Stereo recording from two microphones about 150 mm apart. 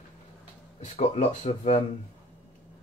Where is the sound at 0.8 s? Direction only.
45° left (ahead or behind).